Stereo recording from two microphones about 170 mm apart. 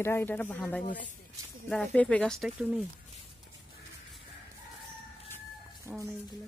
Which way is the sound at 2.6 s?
10° right (ahead or behind).